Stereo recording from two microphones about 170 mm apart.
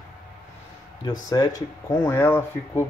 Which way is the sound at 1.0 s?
20° left (ahead or behind).